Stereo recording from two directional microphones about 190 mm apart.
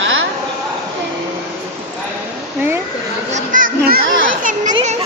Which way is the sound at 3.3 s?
45° right (ahead or behind).